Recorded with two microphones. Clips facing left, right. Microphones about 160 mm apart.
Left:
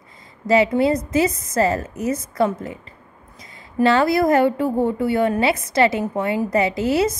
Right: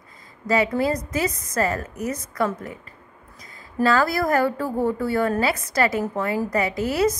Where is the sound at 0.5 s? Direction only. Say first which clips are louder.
Left 5 dB; 25° left (ahead or behind).